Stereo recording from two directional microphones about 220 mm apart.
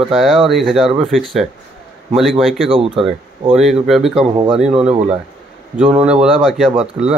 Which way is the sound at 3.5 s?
Centre (ahead or behind).